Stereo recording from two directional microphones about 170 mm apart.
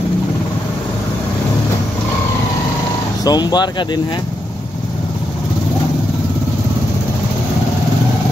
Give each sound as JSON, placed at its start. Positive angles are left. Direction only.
{"t": 3.3, "sound": "speech", "side_deg": 25}